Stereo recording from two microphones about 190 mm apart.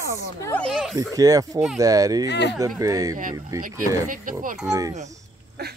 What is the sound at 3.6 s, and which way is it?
Speech, 45° right (ahead or behind).